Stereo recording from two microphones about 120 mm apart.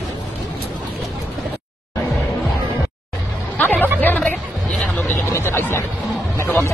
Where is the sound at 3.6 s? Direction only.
15° left (ahead or behind).